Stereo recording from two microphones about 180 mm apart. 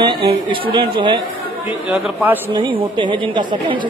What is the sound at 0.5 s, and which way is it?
Speech, 30° right (ahead or behind).